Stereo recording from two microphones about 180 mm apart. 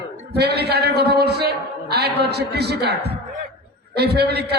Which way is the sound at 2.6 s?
65° right (ahead or behind).